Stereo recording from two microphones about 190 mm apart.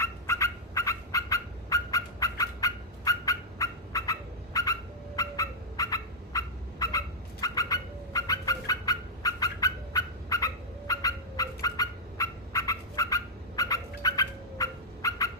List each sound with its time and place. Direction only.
0.0 s fowl: 15° left (ahead or behind)
7.4 s bird: 20° left (ahead or behind)